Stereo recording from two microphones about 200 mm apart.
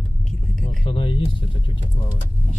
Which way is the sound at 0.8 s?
25° left (ahead or behind).